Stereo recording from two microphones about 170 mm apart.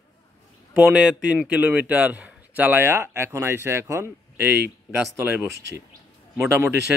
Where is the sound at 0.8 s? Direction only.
5° right (ahead or behind).